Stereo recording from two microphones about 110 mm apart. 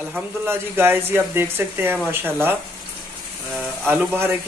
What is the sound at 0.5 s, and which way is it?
Speech, 20° right (ahead or behind).